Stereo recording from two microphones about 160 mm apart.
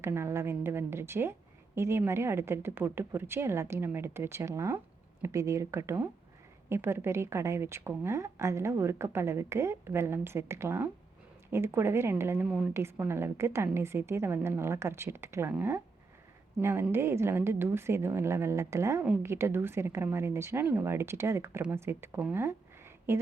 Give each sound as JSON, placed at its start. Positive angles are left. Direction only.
{"t": 0.0, "sound": "a woman's voice", "side_deg": -15}